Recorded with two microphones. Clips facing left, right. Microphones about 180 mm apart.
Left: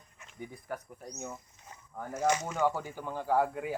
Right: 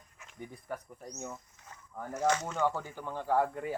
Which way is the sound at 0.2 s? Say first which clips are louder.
Left 1 dB; centre (ahead or behind).